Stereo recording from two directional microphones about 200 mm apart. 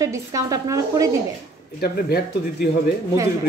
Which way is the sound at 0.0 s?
15° right (ahead or behind).